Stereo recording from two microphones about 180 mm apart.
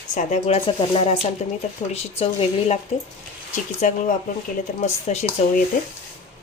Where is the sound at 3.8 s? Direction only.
45° left (ahead or behind).